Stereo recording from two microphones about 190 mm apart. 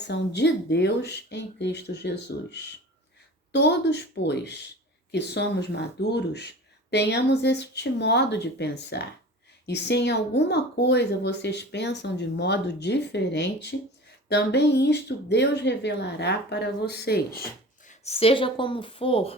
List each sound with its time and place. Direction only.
0.0 s speech: 65° left (ahead or behind)
17.8 s speech: 35° left (ahead or behind)